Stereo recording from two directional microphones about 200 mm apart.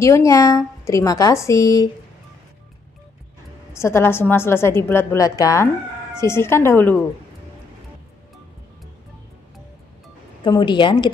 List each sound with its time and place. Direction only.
0.0 s a woman's voice: 15° left (ahead or behind)
3.7 s a woman's voice: 10° left (ahead or behind)
10.4 s speech: 20° left (ahead or behind)